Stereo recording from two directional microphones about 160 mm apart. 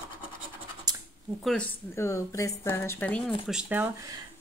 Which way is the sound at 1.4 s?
5° left (ahead or behind).